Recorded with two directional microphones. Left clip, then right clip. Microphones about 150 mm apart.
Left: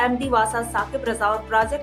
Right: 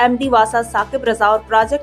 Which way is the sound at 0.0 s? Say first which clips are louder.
Right 7 dB; 50° right (ahead or behind).